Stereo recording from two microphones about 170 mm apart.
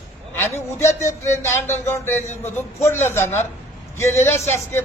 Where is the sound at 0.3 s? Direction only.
15° left (ahead or behind).